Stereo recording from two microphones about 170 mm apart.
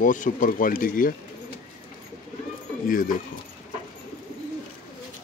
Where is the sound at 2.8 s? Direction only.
55° left (ahead or behind).